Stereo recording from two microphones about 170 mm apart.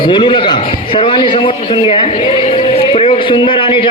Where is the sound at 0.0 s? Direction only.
30° left (ahead or behind).